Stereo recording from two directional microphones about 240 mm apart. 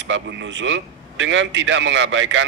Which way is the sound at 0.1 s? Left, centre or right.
Right.